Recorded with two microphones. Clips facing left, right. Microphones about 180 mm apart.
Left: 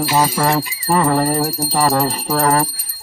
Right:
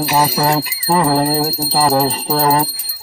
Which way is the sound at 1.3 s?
10° right (ahead or behind).